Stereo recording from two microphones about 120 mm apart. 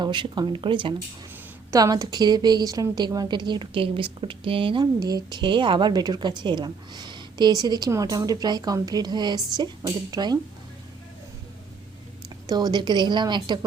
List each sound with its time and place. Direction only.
0.0 s speech: 40° right (ahead or behind)
1.7 s a woman's voice: 30° right (ahead or behind); by 4.9 s 45° right (ahead or behind)
4.9 s a woman's voice: 35° right (ahead or behind)
12.5 s a woman's voice: 35° right (ahead or behind)